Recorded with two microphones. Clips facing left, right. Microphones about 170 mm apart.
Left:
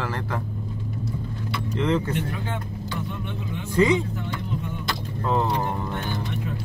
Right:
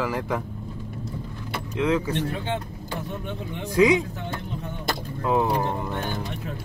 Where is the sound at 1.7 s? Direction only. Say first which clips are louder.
Right 1 dB; 5° right (ahead or behind).